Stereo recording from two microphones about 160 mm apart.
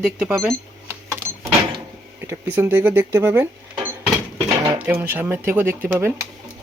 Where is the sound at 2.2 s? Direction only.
10° right (ahead or behind).